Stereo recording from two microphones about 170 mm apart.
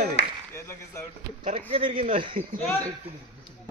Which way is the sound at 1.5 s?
35° right (ahead or behind).